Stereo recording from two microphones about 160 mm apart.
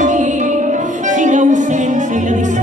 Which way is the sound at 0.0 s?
50° right (ahead or behind).